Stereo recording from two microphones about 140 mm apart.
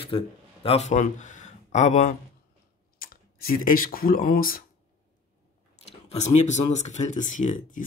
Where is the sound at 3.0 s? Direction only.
90° left.